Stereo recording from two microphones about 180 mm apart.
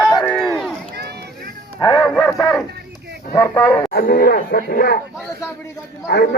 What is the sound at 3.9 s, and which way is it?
A man's voice, 55° left (ahead or behind).